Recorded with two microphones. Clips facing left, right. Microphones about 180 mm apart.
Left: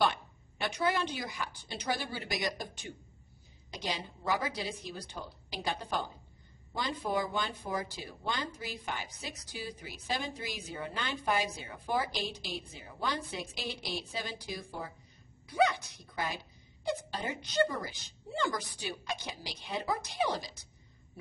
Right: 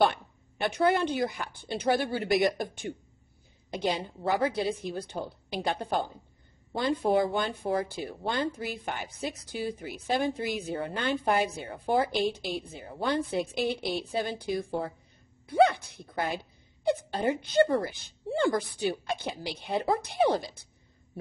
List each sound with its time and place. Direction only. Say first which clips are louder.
0.0 s a woman's voice: right 5 dB; 55° right (ahead or behind)